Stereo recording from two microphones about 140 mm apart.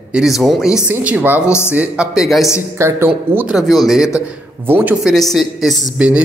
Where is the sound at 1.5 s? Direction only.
20° left (ahead or behind).